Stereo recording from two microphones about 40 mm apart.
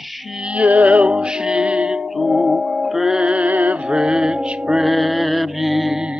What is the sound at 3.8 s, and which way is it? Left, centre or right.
Music, centre.